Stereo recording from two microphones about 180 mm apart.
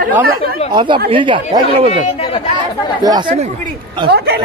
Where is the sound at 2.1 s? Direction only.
30° left (ahead or behind).